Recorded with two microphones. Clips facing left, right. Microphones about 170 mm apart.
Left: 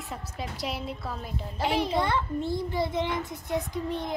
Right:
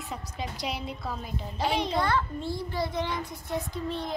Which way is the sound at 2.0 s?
20° left (ahead or behind).